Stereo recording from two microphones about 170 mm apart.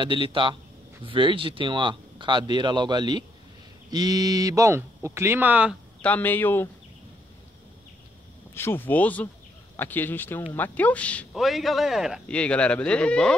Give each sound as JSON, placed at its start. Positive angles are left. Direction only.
{"t": 0.0, "sound": "speech", "side_deg": -30}
{"t": 6.0, "sound": "speech", "side_deg": 10}
{"t": 8.5, "sound": "speech", "side_deg": 15}